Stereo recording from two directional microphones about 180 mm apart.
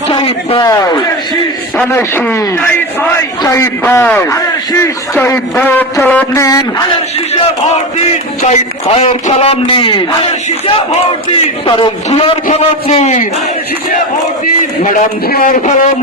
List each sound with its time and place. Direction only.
0.1 s speech: 25° left (ahead or behind)
1.8 s speech: 15° left (ahead or behind)
3.4 s speech: 15° left (ahead or behind)
8.4 s a man's voice: 35° left (ahead or behind)
11.6 s a man's voice: 30° left (ahead or behind)
14.8 s a man's voice: 50° left (ahead or behind)